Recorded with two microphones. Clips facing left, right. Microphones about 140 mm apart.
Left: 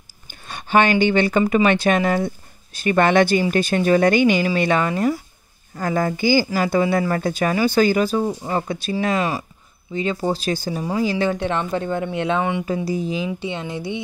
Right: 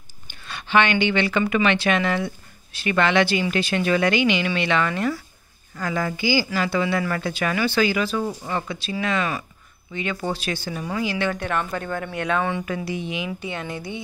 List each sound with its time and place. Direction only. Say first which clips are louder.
0.5 s speech: left 3 dB; 45° left (ahead or behind)
11.3 s speech: left 4 dB; 25° left (ahead or behind)
12.6 s speech: left 5 dB; 35° left (ahead or behind)